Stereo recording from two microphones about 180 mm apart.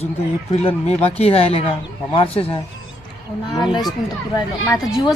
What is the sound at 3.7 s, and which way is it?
Speech, 20° left (ahead or behind).